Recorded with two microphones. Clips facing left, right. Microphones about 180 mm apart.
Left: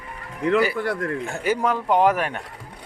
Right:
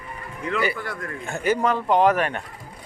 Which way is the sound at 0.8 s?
65° left (ahead or behind).